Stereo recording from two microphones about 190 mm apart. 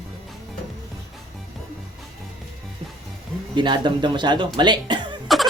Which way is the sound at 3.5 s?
25° right (ahead or behind).